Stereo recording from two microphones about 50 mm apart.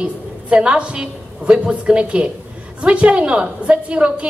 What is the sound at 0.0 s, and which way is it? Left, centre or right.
A woman's voice, right.